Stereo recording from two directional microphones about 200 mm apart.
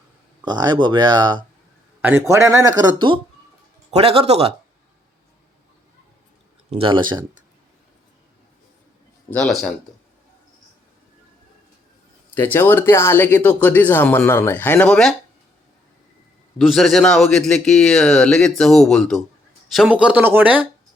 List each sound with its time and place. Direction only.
0.4 s speech: 20° right (ahead or behind)
2.0 s speech: 10° right (ahead or behind); by 4.5 s 30° right (ahead or behind)
6.7 s speech: 25° right (ahead or behind)
9.3 s a man's voice: centre (ahead or behind)
12.5 s speech: 10° left (ahead or behind)
16.6 s a man's voice: centre (ahead or behind)